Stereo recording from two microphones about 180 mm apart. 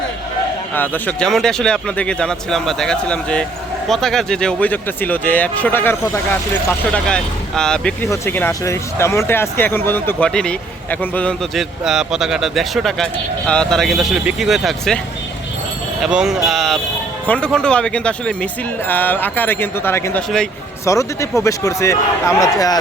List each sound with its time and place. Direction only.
0.8 s speech: 5° left (ahead or behind)
8.0 s speech: 15° left (ahead or behind)
16.0 s speech: 5° right (ahead or behind); by 22.8 s 20° left (ahead or behind)